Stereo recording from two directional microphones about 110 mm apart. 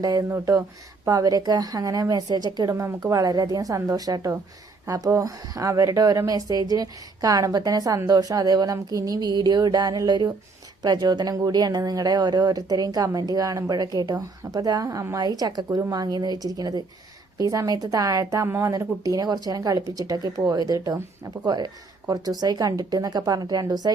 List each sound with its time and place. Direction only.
0.0 s speech: 35° right (ahead or behind)
0.3 s speech: 25° right (ahead or behind)